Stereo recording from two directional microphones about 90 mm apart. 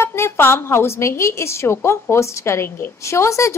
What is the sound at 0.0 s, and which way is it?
A woman's voice, 30° left (ahead or behind).